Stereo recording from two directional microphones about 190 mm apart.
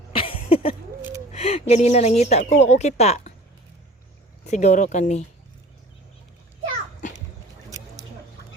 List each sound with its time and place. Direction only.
0.1 s a sound: 30° left (ahead or behind)
1.3 s a woman's voice: 35° left (ahead or behind)
4.4 s a woman's voice: 40° left (ahead or behind)